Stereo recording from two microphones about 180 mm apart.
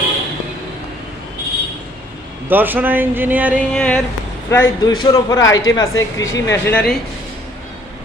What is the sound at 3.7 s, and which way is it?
Speech, 5° left (ahead or behind).